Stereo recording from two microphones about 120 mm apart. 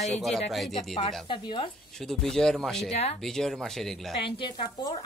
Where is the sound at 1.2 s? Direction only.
45° left (ahead or behind).